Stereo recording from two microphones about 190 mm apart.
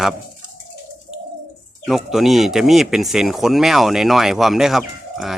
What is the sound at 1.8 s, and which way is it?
Speech, centre (ahead or behind).